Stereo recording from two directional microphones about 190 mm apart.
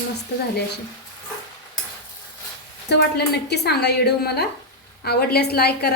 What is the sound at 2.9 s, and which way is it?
A woman's voice, 60° left (ahead or behind).